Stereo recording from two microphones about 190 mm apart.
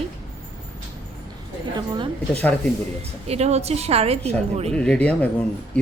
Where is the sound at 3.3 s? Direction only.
35° right (ahead or behind).